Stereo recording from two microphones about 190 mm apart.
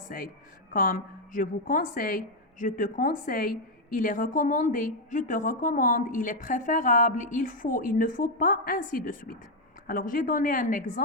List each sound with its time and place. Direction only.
0.7 s a woman's voice: 45° left (ahead or behind)